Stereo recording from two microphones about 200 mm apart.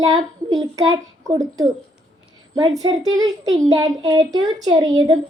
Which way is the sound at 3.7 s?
20° right (ahead or behind).